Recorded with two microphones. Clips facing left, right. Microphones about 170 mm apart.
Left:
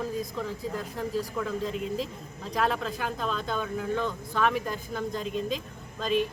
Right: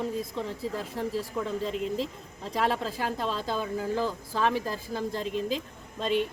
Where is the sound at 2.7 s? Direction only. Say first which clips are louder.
Right 1 dB; 30° right (ahead or behind).